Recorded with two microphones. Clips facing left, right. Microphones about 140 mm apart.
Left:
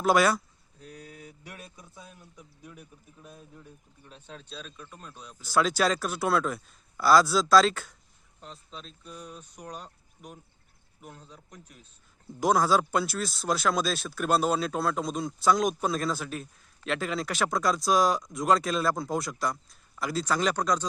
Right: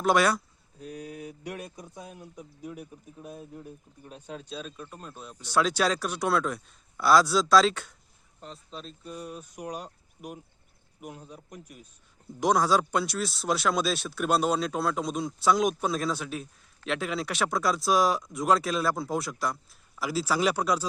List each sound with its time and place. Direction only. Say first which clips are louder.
0.0 s a sound: even; centre (ahead or behind)
1.7 s speech: right 6 dB; 45° right (ahead or behind)
3.2 s speech: right 7 dB; 50° right (ahead or behind)
4.1 s speech: right 5 dB; 10° right (ahead or behind)
12.4 s speech: even; centre (ahead or behind)